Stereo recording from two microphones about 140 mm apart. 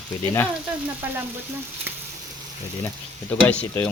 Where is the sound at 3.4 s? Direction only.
10° left (ahead or behind).